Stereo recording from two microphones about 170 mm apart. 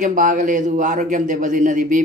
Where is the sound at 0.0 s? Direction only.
50° right (ahead or behind).